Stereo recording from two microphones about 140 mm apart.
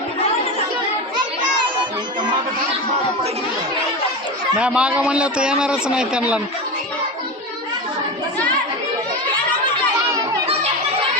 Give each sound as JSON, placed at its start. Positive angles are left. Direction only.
{"t": 4.5, "sound": "a man's voice", "side_deg": -10}